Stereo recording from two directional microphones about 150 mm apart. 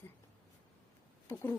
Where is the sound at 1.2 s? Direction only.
15° left (ahead or behind).